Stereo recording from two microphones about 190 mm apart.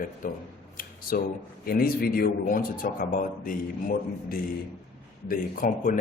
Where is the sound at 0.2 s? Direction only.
45° left (ahead or behind).